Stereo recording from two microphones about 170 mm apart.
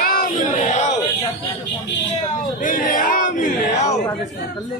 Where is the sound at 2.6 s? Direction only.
50° left (ahead or behind).